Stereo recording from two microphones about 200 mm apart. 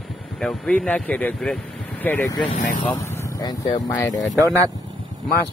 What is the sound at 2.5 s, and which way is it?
Speech, 40° left (ahead or behind).